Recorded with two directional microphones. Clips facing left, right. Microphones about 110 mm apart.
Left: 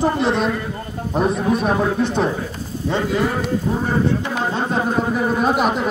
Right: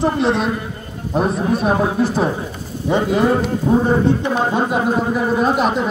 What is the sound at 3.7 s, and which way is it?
Speech, 35° right (ahead or behind).